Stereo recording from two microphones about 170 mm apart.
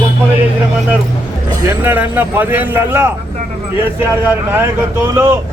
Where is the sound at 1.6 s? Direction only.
10° right (ahead or behind).